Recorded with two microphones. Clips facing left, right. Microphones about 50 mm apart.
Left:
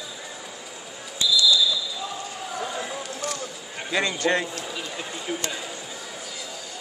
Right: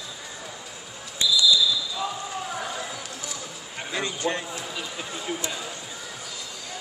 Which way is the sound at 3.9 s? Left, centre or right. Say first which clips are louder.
Left 5 dB; left.